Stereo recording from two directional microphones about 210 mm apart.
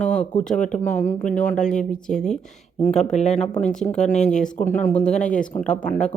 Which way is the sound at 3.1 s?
30° left (ahead or behind).